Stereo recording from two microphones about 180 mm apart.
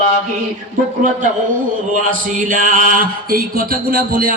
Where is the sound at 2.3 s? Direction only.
45° right (ahead or behind).